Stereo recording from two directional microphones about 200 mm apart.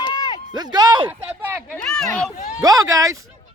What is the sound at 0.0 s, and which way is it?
Run, 20° left (ahead or behind).